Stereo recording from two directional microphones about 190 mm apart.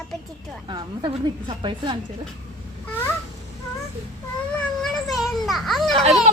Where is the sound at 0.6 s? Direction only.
25° right (ahead or behind).